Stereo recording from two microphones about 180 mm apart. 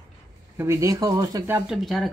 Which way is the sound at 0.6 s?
15° right (ahead or behind).